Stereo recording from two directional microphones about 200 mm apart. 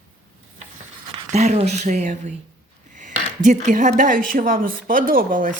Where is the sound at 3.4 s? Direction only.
40° right (ahead or behind).